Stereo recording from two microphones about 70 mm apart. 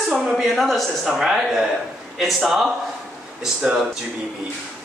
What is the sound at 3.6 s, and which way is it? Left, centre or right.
Speech, centre.